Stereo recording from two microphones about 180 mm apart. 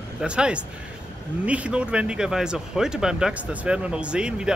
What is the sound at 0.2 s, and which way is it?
Speech, 5° right (ahead or behind).